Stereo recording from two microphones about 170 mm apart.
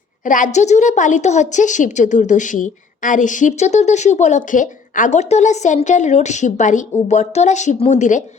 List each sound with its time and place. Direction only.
0.3 s a woman's voice: 50° left (ahead or behind)